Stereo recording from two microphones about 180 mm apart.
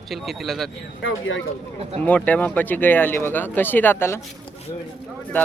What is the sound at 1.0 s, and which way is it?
Speech, 90° left.